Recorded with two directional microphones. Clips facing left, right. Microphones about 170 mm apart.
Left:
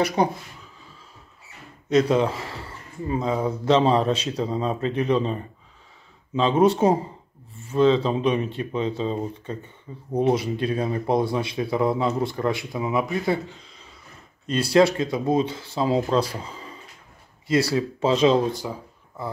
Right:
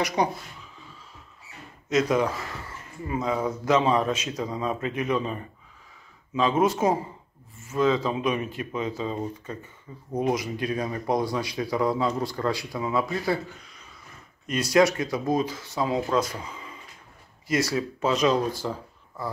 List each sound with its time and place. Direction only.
1.9 s speech: 30° left (ahead or behind)